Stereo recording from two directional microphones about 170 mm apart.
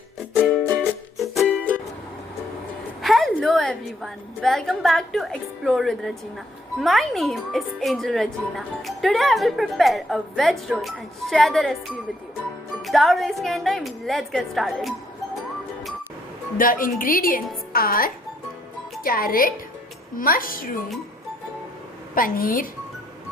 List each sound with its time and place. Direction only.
0.8 s music: centre (ahead or behind)
3.0 s a woman's voice: centre (ahead or behind)
16.6 s a woman's voice: 55° left (ahead or behind)
22.1 s a woman's voice: 55° left (ahead or behind)